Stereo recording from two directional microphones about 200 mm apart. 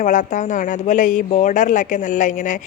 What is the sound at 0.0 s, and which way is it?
Speech, 40° left (ahead or behind).